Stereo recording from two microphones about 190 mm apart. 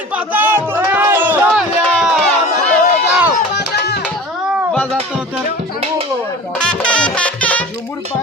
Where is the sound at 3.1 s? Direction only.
5° right (ahead or behind).